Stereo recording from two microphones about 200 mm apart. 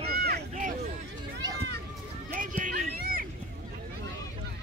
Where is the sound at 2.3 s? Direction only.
40° right (ahead or behind).